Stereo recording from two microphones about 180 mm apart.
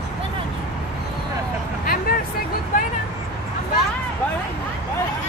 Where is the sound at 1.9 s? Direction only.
55° left (ahead or behind).